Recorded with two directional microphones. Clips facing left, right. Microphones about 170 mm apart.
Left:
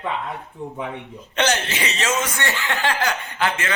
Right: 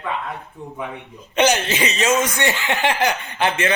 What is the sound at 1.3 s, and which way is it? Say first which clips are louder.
Speech: right 4 dB; 15° right (ahead or behind).